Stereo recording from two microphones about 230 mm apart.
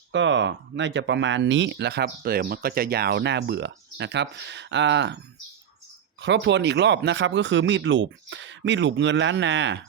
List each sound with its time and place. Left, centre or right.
0.1 s speech: right
6.2 s speech: right